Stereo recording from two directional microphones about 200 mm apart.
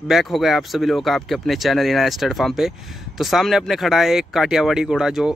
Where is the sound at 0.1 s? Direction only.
Centre (ahead or behind).